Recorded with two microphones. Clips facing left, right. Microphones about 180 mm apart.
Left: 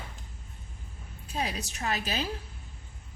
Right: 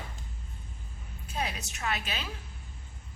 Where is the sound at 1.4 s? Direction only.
35° left (ahead or behind).